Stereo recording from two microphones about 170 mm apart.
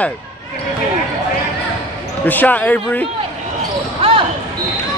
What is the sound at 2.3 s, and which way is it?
Speech, 10° left (ahead or behind).